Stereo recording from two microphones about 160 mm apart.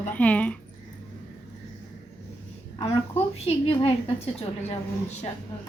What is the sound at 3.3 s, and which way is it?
Speech, 40° left (ahead or behind).